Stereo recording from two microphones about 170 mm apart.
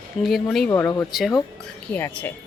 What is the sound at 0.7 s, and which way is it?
Speech, 15° left (ahead or behind).